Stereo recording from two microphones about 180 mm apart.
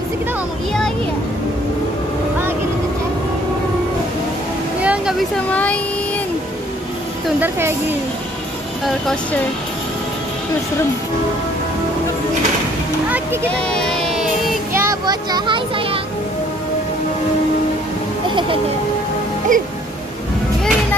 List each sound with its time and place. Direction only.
4.8 s speech: 5° right (ahead or behind)
7.3 s speech: 10° right (ahead or behind)
8.8 s speech: centre (ahead or behind)
13.5 s child singing: 5° left (ahead or behind)
14.7 s music: 15° right (ahead or behind)
19.5 s speech: 45° right (ahead or behind)